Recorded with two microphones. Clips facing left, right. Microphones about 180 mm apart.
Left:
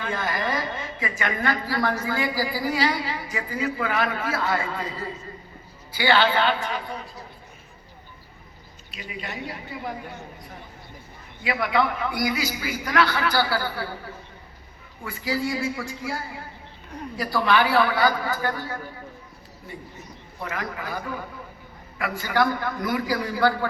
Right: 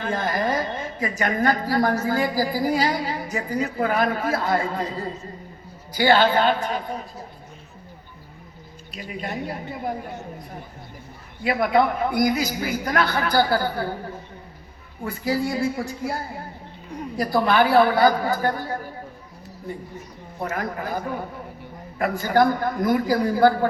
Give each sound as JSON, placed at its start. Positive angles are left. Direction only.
{"t": 0.0, "sound": "a woman's voice", "side_deg": -45}
{"t": 9.0, "sound": "a woman's voice", "side_deg": -45}
{"t": 11.4, "sound": "a woman's voice", "side_deg": -45}
{"t": 20.4, "sound": "a man's voice", "side_deg": -40}